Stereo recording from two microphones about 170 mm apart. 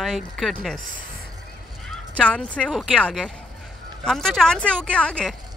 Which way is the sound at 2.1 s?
5° left (ahead or behind).